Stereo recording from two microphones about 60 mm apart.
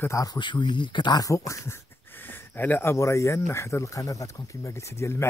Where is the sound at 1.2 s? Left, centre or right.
Left.